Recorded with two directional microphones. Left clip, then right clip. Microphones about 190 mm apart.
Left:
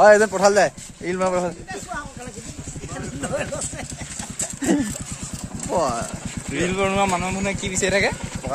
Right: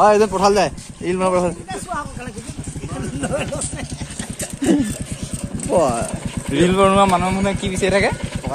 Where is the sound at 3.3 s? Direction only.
Centre (ahead or behind).